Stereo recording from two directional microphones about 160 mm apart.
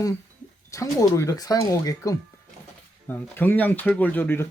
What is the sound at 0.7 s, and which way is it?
Speech, 20° left (ahead or behind).